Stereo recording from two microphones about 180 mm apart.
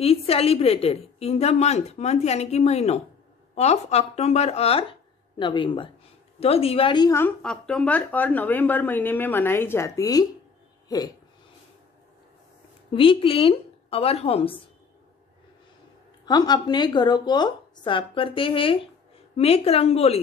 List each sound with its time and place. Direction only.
0.0 s a woman's voice: 35° left (ahead or behind)
7.2 s a woman's voice: 5° left (ahead or behind)
12.9 s a woman's voice: 30° left (ahead or behind)
16.3 s a woman's voice: 20° left (ahead or behind)